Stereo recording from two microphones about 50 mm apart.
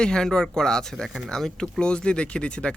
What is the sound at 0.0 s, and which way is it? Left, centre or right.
Speech, centre.